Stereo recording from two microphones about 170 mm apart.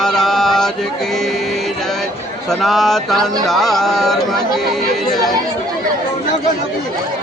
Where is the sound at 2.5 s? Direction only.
Centre (ahead or behind).